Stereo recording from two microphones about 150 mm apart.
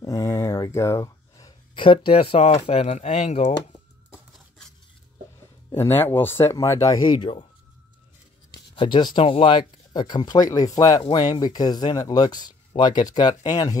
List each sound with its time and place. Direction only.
0.0 s speech: 20° left (ahead or behind); by 3.5 s 50° left (ahead or behind)
4.3 s dishes: 5° left (ahead or behind)
5.7 s speech: 15° left (ahead or behind)
8.7 s speech: 30° left (ahead or behind)